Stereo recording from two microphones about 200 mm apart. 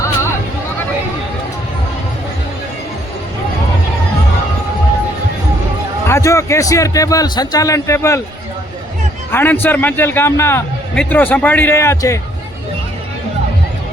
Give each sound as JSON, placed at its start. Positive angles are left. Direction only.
{"t": 6.1, "sound": "a man's voice", "side_deg": 15}
{"t": 9.3, "sound": "a man's voice", "side_deg": 10}